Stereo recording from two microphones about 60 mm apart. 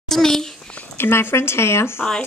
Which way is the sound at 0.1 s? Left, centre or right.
Centre.